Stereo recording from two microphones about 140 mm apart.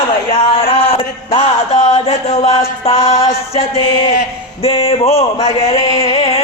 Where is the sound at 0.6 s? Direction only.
40° left (ahead or behind).